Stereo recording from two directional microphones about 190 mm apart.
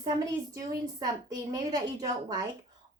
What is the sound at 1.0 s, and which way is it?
A woman's voice, 20° right (ahead or behind).